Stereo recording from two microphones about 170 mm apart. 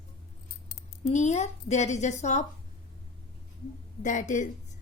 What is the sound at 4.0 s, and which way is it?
Speech, 45° left (ahead or behind).